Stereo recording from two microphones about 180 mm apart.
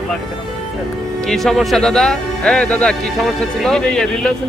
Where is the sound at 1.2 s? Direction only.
Centre (ahead or behind).